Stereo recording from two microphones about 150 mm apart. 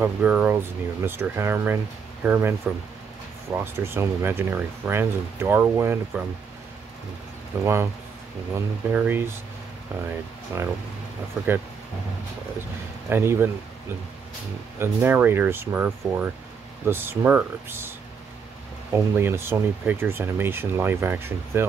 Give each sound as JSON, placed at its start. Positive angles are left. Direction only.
{"t": 0.0, "sound": "speech", "side_deg": -15}
{"t": 7.6, "sound": "speech", "side_deg": -15}
{"t": 10.5, "sound": "speech", "side_deg": -20}
{"t": 13.1, "sound": "speech", "side_deg": -15}
{"t": 14.8, "sound": "speech", "side_deg": -15}
{"t": 18.9, "sound": "speech", "side_deg": -15}